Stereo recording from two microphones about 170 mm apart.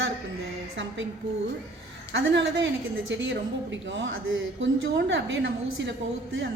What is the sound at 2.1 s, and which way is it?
A woman's voice, 90° right.